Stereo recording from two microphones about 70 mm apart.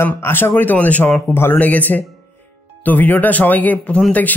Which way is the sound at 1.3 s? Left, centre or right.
Left.